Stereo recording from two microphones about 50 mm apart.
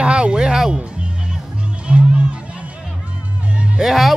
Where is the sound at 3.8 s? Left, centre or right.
Centre.